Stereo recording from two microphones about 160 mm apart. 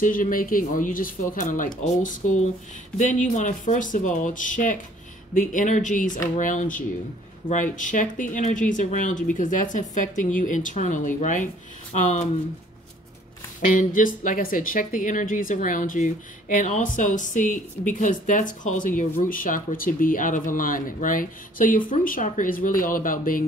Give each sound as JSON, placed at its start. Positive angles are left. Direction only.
{"t": 0.0, "sound": "speech", "side_deg": 60}
{"t": 3.0, "sound": "speech", "side_deg": 50}
{"t": 13.7, "sound": "speech", "side_deg": 55}